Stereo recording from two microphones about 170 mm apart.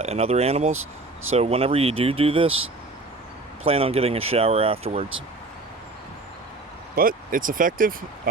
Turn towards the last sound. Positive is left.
turn(degrees=-55)  # may be behind; listen again after turning